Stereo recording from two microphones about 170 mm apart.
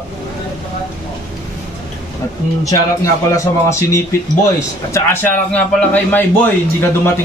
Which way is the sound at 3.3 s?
15° left (ahead or behind).